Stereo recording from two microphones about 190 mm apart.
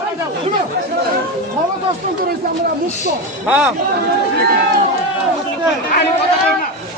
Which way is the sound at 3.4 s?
5° right (ahead or behind).